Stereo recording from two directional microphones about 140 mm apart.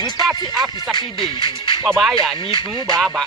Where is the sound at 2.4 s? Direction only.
35° left (ahead or behind).